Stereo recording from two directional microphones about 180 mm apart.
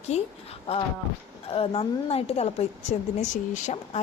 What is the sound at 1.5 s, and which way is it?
A woman's voice, 30° left (ahead or behind).